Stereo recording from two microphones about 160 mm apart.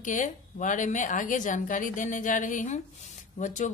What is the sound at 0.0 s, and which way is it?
A woman's voice, 50° left (ahead or behind).